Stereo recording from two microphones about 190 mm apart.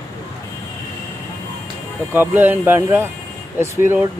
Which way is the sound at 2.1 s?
10° right (ahead or behind).